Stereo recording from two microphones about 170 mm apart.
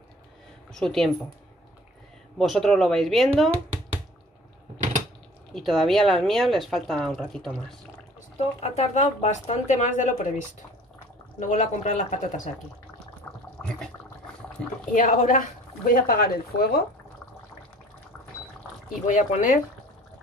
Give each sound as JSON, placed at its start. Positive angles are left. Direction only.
{"t": 0.7, "sound": "speech", "side_deg": 5}
{"t": 2.3, "sound": "speech", "side_deg": 0}
{"t": 5.5, "sound": "speech", "side_deg": 0}
{"t": 8.4, "sound": "speech", "side_deg": 40}
{"t": 14.9, "sound": "speech", "side_deg": 45}
{"t": 19.0, "sound": "speech", "side_deg": 45}